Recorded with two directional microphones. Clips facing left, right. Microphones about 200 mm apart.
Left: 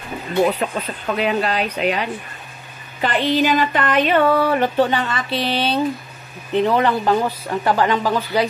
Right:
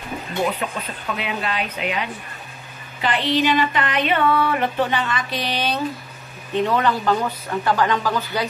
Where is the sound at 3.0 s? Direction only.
45° left (ahead or behind); by 5.5 s 30° left (ahead or behind).